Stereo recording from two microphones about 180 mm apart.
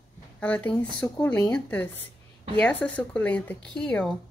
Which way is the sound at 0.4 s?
10° left (ahead or behind).